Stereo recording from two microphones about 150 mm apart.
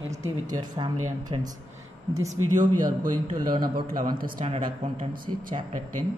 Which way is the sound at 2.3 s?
55° right (ahead or behind).